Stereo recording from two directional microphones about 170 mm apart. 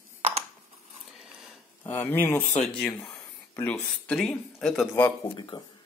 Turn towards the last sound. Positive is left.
turn(degrees=25)  # may be behind; listen again after turning